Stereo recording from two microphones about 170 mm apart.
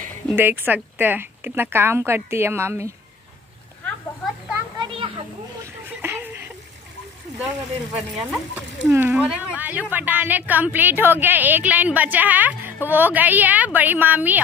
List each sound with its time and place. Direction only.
0.4 s speech: 10° right (ahead or behind)
4.7 s children playing: 30° right (ahead or behind)
7.4 s speech: 5° right (ahead or behind)